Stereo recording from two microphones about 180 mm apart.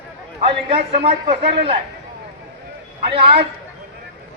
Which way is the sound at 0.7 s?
30° right (ahead or behind).